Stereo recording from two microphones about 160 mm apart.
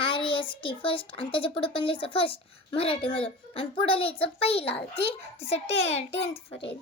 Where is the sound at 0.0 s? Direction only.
30° left (ahead or behind).